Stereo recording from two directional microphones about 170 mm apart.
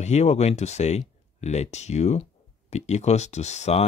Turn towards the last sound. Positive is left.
turn(degrees=40)  # may be behind; listen again after turning